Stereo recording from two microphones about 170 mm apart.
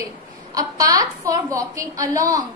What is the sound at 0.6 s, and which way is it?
A woman's voice, 20° right (ahead or behind).